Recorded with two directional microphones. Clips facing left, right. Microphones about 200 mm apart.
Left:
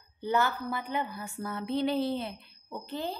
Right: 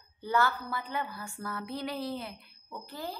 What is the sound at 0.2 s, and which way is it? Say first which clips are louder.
A woman's voice: left 1 dB; 20° left (ahead or behind).